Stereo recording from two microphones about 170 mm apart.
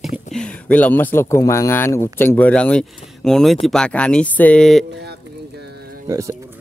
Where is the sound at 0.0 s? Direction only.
Centre (ahead or behind).